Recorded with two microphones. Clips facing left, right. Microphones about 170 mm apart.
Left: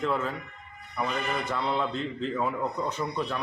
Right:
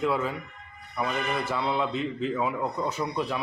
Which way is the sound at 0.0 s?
5° right (ahead or behind).